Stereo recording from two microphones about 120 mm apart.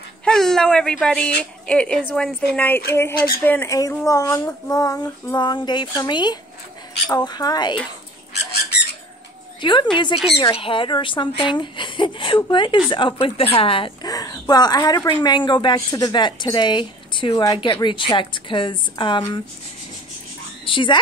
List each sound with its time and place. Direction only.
0.2 s a sound: 5° left (ahead or behind)
1.0 s a woman's voice: 10° left (ahead or behind); by 7.8 s 35° left (ahead or behind)
9.6 s a woman's voice: 40° left (ahead or behind)
14.0 s a woman's voice: 30° left (ahead or behind)
20.6 s a woman's voice: 40° left (ahead or behind)